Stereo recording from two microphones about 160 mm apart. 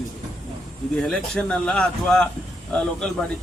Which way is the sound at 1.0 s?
5° left (ahead or behind).